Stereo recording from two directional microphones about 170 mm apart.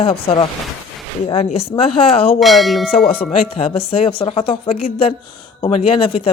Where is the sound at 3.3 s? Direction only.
35° left (ahead or behind).